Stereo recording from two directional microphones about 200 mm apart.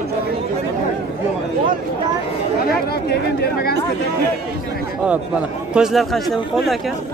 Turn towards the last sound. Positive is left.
turn(degrees=0)  # may be behind; listen again after turning